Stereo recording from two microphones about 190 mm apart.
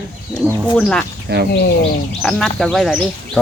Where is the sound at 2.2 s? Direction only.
5° left (ahead or behind).